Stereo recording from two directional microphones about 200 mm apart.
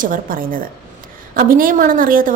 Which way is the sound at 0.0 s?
45° right (ahead or behind).